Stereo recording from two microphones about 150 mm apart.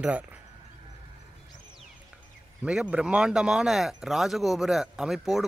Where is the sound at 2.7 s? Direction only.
5° right (ahead or behind).